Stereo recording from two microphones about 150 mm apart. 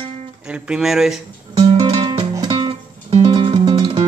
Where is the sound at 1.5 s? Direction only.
30° right (ahead or behind).